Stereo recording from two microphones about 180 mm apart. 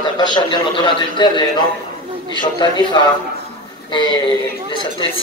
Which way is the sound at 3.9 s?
25° left (ahead or behind).